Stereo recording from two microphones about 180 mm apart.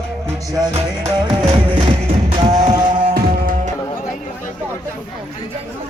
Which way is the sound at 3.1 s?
60° right (ahead or behind).